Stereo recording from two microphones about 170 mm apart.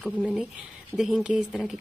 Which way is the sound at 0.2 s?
5° right (ahead or behind).